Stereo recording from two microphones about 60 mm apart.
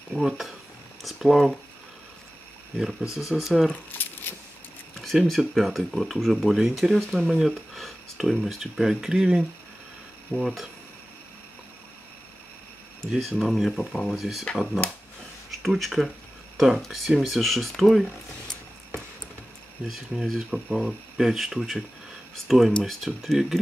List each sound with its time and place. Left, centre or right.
0.1 s speech: centre
2.8 s speech: centre
4.0 s keys jangling: left
5.0 s speech: centre
10.3 s speech: centre
13.2 s speech: centre
15.6 s speech: centre
19.9 s speech: centre